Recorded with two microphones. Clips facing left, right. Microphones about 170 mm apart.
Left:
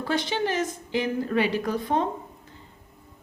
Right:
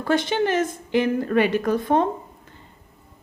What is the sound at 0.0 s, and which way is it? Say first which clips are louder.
A woman's voice: right 5 dB; 55° right (ahead or behind).